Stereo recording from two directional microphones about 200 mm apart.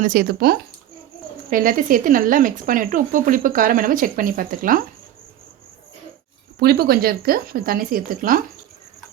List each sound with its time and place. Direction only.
0.0 s speech: 45° right (ahead or behind)
6.6 s speech: 50° right (ahead or behind)